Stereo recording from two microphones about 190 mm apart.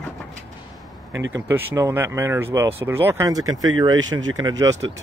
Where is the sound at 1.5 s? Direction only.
10° right (ahead or behind).